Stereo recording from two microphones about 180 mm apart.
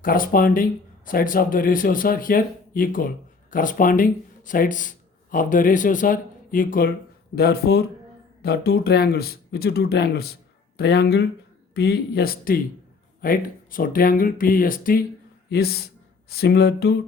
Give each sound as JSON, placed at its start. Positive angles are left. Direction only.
{"t": 0.0, "sound": "a man's voice", "side_deg": 50}